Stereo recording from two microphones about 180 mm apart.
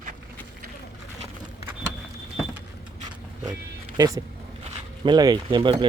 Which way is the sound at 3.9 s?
20° right (ahead or behind).